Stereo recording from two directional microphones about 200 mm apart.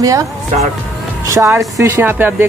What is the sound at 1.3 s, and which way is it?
Speech, 15° right (ahead or behind).